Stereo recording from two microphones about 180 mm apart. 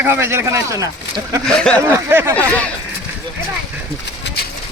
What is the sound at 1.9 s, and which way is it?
Speech, 15° right (ahead or behind).